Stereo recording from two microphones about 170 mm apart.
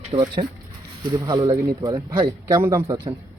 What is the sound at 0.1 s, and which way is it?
Speech, 25° right (ahead or behind).